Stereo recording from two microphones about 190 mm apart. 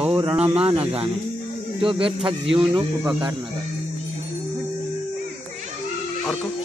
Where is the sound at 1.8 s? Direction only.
30° right (ahead or behind).